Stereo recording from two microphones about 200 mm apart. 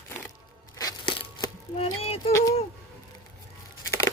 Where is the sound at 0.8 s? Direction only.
20° left (ahead or behind).